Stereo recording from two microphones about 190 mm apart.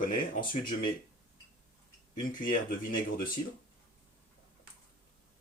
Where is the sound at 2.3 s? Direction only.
45° left (ahead or behind).